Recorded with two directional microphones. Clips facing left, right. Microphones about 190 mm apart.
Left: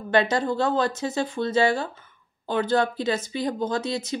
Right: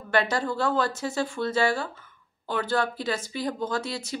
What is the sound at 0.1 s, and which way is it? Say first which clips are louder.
Speech: left 3 dB; 20° left (ahead or behind).